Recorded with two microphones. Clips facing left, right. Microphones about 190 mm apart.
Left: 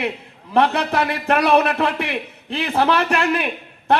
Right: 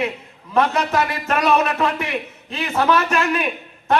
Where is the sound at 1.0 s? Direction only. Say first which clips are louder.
Left 4 dB; 60° left (ahead or behind).